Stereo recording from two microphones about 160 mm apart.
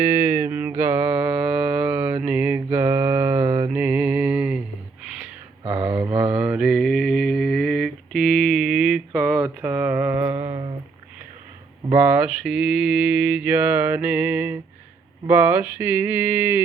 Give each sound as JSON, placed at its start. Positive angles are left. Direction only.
{"t": 0.0, "sound": "music", "side_deg": -15}
{"t": 0.8, "sound": "mantra", "side_deg": -10}
{"t": 3.7, "sound": "mantra", "side_deg": -10}
{"t": 5.6, "sound": "mantra", "side_deg": -20}
{"t": 6.3, "sound": "mantra", "side_deg": -5}
{"t": 9.4, "sound": "mantra", "side_deg": -15}
{"t": 10.2, "sound": "mantra", "side_deg": -25}
{"t": 12.1, "sound": "mantra", "side_deg": -5}